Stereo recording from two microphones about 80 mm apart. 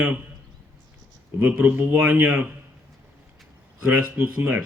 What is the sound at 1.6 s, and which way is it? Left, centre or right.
Speech, centre.